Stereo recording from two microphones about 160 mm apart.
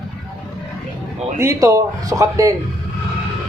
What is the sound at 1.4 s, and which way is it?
Speech, 20° right (ahead or behind).